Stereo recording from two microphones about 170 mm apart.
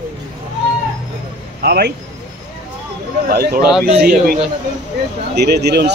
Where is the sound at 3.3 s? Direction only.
65° right (ahead or behind).